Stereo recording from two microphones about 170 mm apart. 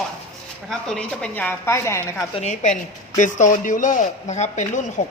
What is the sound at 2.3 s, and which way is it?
A woman's voice, 40° left (ahead or behind).